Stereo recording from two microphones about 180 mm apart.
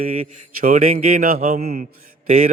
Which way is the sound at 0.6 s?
50° right (ahead or behind).